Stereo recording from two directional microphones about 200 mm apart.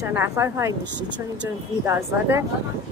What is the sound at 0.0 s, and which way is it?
A woman's voice, 10° right (ahead or behind).